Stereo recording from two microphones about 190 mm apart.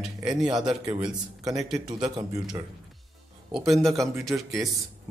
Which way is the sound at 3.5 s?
Centre (ahead or behind).